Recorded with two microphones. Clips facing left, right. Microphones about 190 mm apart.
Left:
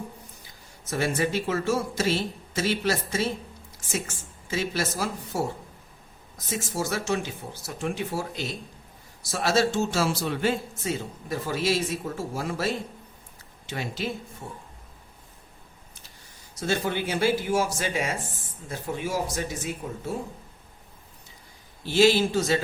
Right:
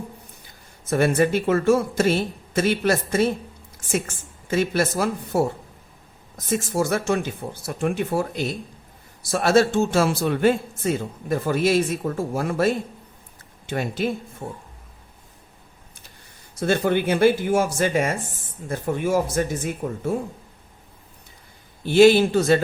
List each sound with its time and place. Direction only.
0.9 s a man's voice: 55° right (ahead or behind)
6.5 s a man's voice: 55° right (ahead or behind)
16.6 s a man's voice: 55° right (ahead or behind)
21.8 s a man's voice: 55° right (ahead or behind)